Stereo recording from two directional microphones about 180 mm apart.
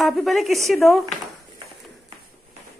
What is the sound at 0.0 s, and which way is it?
Speech, centre (ahead or behind).